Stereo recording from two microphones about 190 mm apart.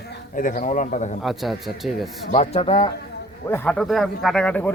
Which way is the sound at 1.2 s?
Centre (ahead or behind).